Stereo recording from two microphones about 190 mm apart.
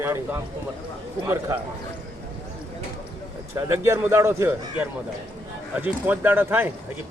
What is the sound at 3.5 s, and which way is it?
A man's voice, 15° right (ahead or behind).